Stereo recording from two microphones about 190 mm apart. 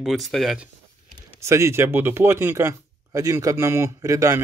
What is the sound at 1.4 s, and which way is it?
Speech, 15° right (ahead or behind).